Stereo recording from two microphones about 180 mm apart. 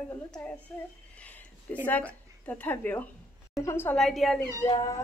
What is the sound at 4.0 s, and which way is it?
Speech, centre (ahead or behind).